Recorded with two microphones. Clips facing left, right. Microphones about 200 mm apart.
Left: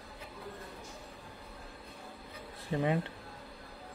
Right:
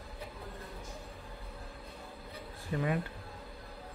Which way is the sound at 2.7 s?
25° left (ahead or behind).